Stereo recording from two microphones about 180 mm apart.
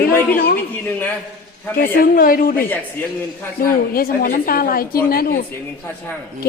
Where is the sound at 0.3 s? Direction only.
55° left (ahead or behind).